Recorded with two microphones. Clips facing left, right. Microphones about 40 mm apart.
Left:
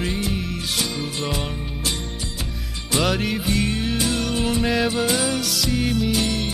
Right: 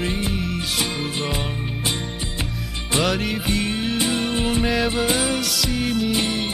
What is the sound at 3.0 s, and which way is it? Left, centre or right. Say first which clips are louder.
Music: even; centre.